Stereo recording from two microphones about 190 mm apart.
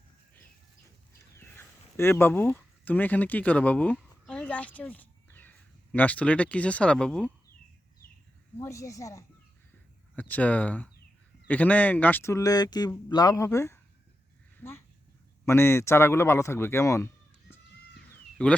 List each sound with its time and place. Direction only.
1.4 s a woman's voice: 10° left (ahead or behind)
8.6 s speech: 15° left (ahead or behind)
18.1 s a sound: 5° left (ahead or behind)